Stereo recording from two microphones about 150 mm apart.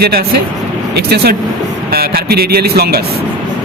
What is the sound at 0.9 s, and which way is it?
Speech, 90° right.